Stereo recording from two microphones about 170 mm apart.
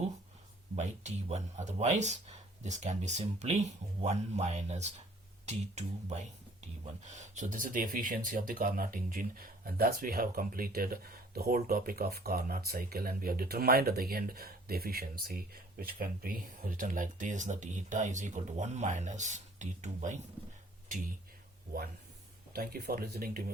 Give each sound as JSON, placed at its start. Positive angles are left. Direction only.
{"t": 0.8, "sound": "speech", "side_deg": -45}
{"t": 22.5, "sound": "speech", "side_deg": -65}